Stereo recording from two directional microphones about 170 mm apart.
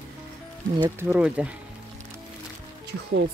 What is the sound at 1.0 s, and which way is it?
Speech, 10° right (ahead or behind).